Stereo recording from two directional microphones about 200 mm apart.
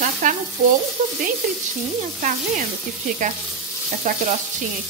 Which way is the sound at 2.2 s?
40° right (ahead or behind).